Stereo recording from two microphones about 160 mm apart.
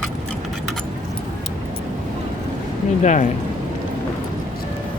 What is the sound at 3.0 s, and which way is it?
Speech, 50° left (ahead or behind).